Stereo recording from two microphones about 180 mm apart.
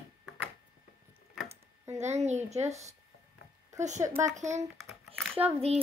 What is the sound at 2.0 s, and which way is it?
Speech, 40° right (ahead or behind).